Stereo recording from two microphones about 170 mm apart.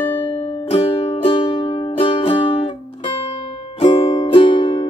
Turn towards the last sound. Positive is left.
turn(degrees=30)  # may be behind; listen again after turning